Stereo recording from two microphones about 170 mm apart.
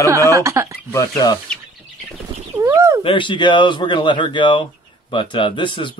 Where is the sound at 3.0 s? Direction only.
30° left (ahead or behind).